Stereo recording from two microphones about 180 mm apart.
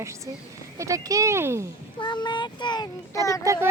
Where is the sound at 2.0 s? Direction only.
25° left (ahead or behind).